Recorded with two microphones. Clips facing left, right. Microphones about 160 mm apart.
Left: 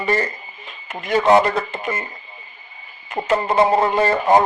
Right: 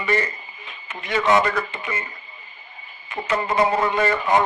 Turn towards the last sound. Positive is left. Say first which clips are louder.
# left 4 dB
turn(degrees=35)  # may be behind; listen again after turning